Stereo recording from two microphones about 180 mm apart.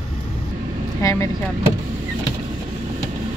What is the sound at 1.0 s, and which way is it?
Speech, 15° left (ahead or behind).